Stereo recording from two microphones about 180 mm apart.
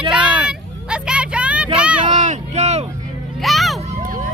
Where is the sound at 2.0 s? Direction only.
40° right (ahead or behind).